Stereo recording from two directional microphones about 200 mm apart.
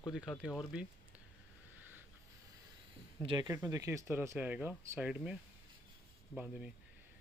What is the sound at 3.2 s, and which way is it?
Speech, 20° right (ahead or behind).